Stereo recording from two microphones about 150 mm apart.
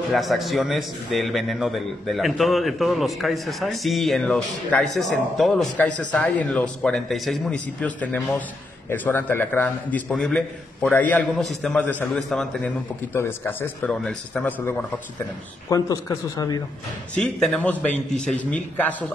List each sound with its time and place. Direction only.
0.1 s a man's voice: centre (ahead or behind)
13.1 s a man's voice: 15° left (ahead or behind)
17.1 s a man's voice: 5° left (ahead or behind)